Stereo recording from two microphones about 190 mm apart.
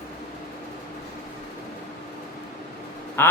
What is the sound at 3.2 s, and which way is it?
Speech, 10° left (ahead or behind).